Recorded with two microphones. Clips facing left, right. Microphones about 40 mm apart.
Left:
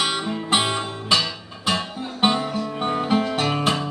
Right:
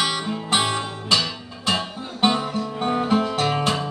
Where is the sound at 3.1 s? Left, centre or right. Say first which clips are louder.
Left 1 dB; centre.